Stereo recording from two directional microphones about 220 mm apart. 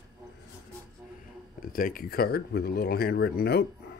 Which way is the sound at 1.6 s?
40° left (ahead or behind).